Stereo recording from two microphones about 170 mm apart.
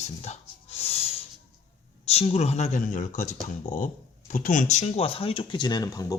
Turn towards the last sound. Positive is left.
turn(degrees=20)  # may be behind; listen again after turning